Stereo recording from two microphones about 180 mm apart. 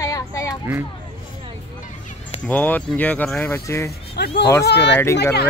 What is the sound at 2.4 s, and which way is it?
Speech, 10° left (ahead or behind).